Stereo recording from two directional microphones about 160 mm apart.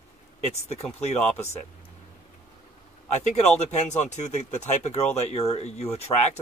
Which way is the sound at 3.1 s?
45° left (ahead or behind).